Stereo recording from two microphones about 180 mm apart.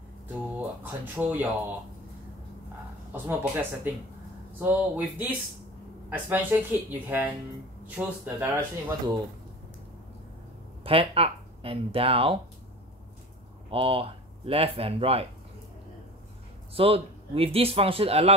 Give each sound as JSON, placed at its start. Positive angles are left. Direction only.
{"t": 0.6, "sound": "speech", "side_deg": -10}
{"t": 3.1, "sound": "speech", "side_deg": -10}
{"t": 10.8, "sound": "speech", "side_deg": -30}
{"t": 13.7, "sound": "speech", "side_deg": -30}
{"t": 16.7, "sound": "speech", "side_deg": -30}